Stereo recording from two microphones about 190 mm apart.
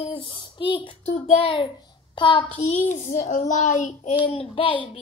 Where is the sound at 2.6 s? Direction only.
40° left (ahead or behind).